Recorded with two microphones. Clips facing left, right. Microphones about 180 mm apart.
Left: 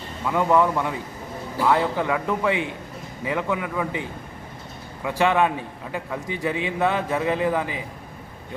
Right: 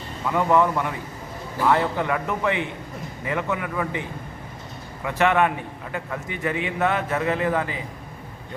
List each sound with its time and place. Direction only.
0.3 s a man's voice: 15° left (ahead or behind)
5.0 s a man's voice: 15° left (ahead or behind)